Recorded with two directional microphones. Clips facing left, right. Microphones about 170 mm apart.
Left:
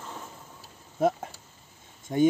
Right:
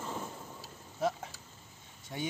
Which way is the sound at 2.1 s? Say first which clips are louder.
Left 16 dB; 50° left (ahead or behind).